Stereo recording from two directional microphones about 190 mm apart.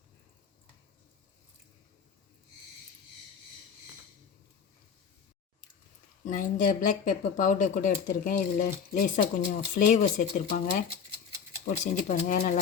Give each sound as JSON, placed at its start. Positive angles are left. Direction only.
{"t": 6.2, "sound": "speech", "side_deg": 45}
{"t": 11.6, "sound": "speech", "side_deg": 40}